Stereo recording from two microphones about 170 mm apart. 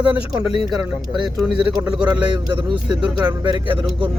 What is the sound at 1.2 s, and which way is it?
Speech, 5° right (ahead or behind).